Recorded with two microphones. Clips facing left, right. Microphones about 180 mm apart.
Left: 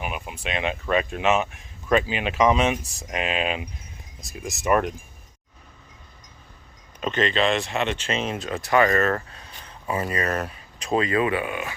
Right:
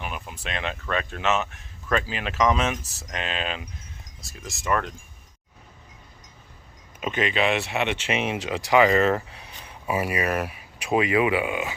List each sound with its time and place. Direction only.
0.0 s a sound: 10° left (ahead or behind)
0.4 s speech: 5° left (ahead or behind)
7.0 s speech: 10° right (ahead or behind)